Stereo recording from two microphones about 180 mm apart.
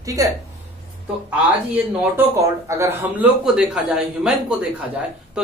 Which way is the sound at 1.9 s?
15° right (ahead or behind).